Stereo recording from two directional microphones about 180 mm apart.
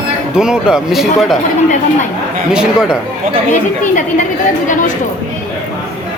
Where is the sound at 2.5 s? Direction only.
5° right (ahead or behind).